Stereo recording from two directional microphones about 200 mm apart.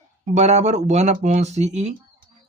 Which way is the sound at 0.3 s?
35° right (ahead or behind).